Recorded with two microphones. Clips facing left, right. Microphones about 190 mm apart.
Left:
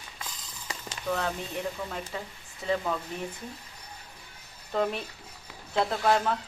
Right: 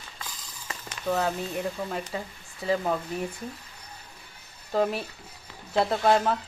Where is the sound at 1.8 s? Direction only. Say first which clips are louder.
Right 4 dB; 35° right (ahead or behind).